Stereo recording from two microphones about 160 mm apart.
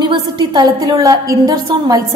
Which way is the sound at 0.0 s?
25° right (ahead or behind).